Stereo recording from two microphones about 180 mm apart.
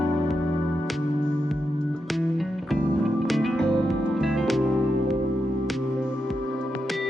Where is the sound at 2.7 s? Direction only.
Centre (ahead or behind).